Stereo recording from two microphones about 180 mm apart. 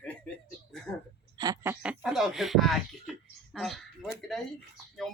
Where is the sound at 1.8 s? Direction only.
Centre (ahead or behind).